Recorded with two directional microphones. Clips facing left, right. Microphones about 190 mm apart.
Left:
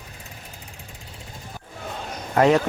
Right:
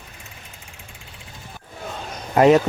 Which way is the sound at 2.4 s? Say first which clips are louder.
Right 4 dB; 20° right (ahead or behind).